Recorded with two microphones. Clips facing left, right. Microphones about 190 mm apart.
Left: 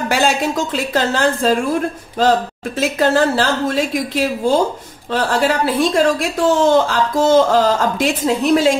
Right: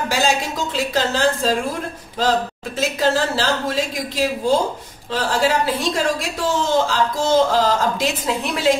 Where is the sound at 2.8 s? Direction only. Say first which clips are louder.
Left 4 dB; 55° left (ahead or behind).